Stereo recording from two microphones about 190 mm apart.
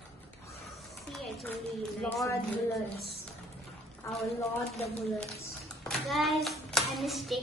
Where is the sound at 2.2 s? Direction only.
15° left (ahead or behind).